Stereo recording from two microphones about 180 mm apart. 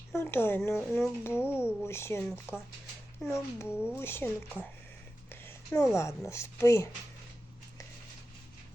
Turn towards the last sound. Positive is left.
turn(degrees=15)  # may be behind; listen again after turning